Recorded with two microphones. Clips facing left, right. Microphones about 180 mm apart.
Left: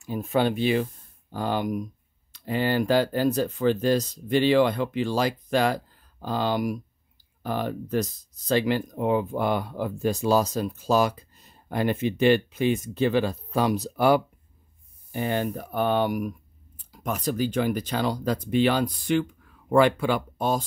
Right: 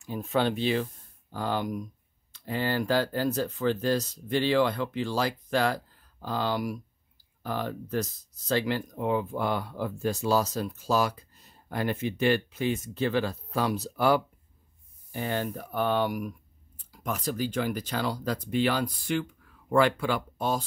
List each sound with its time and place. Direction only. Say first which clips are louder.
0.0 s speech: left 3 dB; 10° left (ahead or behind)